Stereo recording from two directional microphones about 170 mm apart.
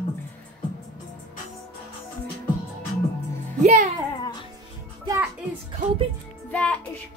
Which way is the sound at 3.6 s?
45° right (ahead or behind).